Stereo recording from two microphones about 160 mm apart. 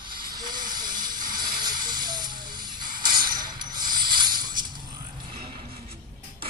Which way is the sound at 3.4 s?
30° right (ahead or behind).